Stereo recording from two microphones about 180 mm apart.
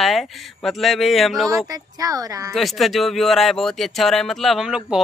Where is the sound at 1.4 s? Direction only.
20° right (ahead or behind).